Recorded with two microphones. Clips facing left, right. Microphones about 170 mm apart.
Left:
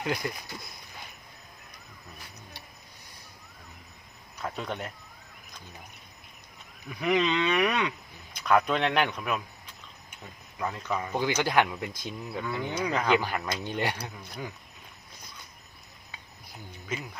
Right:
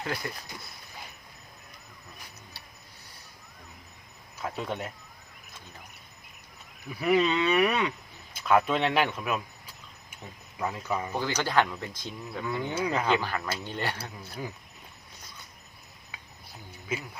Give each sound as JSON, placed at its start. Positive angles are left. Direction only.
{"t": 0.0, "sound": "speech", "side_deg": 15}
{"t": 4.4, "sound": "speech", "side_deg": -5}
{"t": 6.9, "sound": "speech", "side_deg": -5}
{"t": 11.1, "sound": "speech", "side_deg": 10}
{"t": 12.4, "sound": "speech", "side_deg": 0}
{"t": 13.1, "sound": "speech", "side_deg": 15}
{"t": 14.0, "sound": "speech", "side_deg": -5}
{"t": 16.9, "sound": "speech", "side_deg": -10}